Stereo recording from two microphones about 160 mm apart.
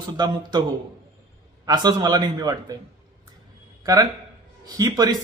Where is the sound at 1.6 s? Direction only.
25° right (ahead or behind).